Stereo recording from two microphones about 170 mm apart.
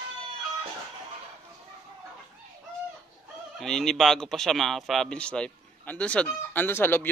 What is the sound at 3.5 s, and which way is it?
Speech, 5° left (ahead or behind).